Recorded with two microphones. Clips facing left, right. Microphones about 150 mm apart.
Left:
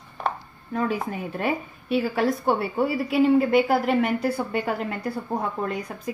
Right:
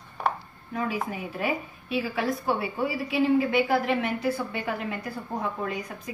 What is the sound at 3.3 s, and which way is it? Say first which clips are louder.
A woman's voice: left 4 dB; 55° left (ahead or behind).